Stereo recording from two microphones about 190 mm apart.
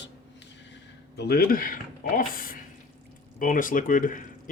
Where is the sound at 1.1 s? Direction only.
55° left (ahead or behind).